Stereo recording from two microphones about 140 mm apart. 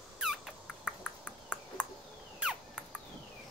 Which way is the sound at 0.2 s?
5° right (ahead or behind).